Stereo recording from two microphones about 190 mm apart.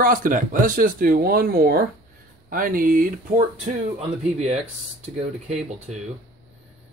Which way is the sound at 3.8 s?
35° right (ahead or behind).